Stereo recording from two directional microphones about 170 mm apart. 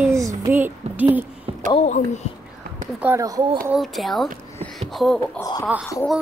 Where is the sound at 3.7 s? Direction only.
Centre (ahead or behind).